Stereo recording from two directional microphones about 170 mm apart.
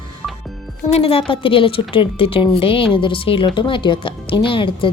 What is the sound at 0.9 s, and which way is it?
A woman's voice, 35° left (ahead or behind).